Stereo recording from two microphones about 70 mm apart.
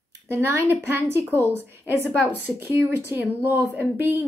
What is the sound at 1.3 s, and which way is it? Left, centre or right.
Speech, left.